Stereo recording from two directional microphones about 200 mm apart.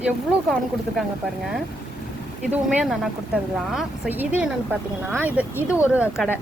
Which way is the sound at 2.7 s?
5° right (ahead or behind).